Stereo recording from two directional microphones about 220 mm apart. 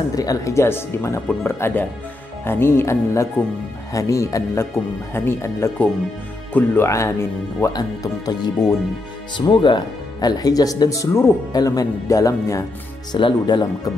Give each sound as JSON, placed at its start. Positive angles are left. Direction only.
{"t": 0.1, "sound": "speech", "side_deg": 15}